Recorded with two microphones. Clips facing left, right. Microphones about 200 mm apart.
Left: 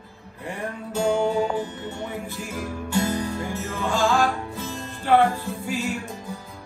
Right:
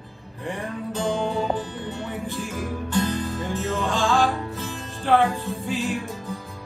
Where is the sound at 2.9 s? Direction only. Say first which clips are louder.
Left 1 dB; 15° left (ahead or behind).